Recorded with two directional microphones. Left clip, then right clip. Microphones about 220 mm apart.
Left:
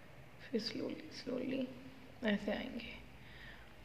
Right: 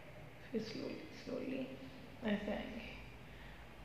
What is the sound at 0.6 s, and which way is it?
Speech, 45° left (ahead or behind).